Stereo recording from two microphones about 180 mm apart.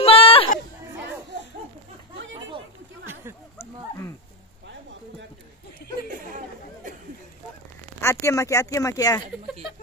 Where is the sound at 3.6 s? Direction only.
15° left (ahead or behind).